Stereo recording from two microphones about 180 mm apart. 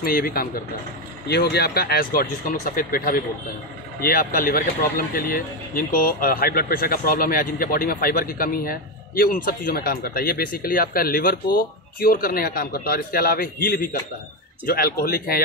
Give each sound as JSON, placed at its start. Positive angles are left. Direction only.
{"t": 0.0, "sound": "speech", "side_deg": 55}
{"t": 1.3, "sound": "speech", "side_deg": 65}